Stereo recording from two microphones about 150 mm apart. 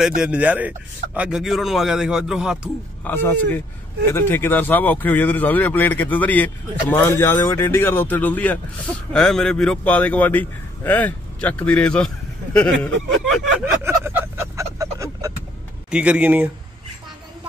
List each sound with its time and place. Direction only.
0.0 s speech: 5° right (ahead or behind)
3.0 s speech: 15° left (ahead or behind)
13.7 s vehicle: 15° right (ahead or behind)
15.9 s speech: 10° right (ahead or behind)